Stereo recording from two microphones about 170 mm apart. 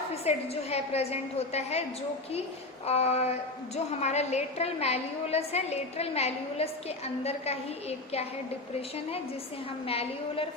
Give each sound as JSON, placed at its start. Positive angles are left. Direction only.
{"t": 0.1, "sound": "a woman's voice", "side_deg": 35}
{"t": 2.8, "sound": "a woman's voice", "side_deg": 35}
{"t": 9.8, "sound": "a woman's voice", "side_deg": 35}